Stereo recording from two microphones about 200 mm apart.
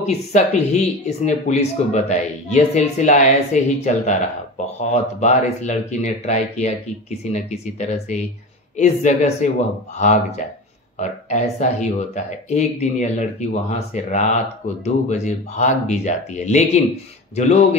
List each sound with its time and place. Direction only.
0.0 s speech: 35° left (ahead or behind)